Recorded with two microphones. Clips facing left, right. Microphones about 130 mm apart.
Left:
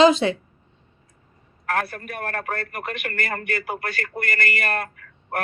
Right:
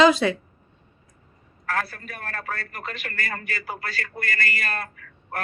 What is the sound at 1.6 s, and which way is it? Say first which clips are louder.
A man's voice: left 3 dB; 55° left (ahead or behind).